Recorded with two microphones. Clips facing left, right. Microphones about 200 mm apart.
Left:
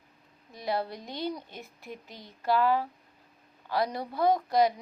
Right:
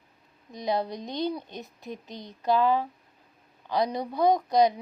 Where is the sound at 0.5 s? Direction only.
20° right (ahead or behind).